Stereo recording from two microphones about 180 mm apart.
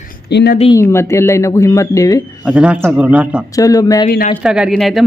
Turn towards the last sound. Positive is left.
turn(degrees=0)  # may be behind; listen again after turning